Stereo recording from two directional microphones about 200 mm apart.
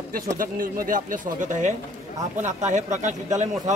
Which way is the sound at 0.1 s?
45° right (ahead or behind).